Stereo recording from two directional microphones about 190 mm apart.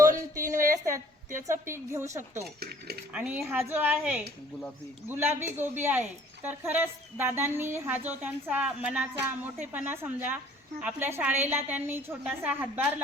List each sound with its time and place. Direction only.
0.0 s a sound: 15° right (ahead or behind)
2.6 s cutlery: 55° right (ahead or behind)
3.1 s a woman's voice: 5° right (ahead or behind)